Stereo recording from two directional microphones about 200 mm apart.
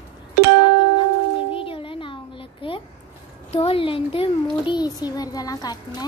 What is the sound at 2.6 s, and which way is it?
A woman's voice, 25° left (ahead or behind).